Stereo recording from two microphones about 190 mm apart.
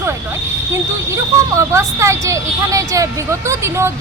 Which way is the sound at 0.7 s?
15° right (ahead or behind).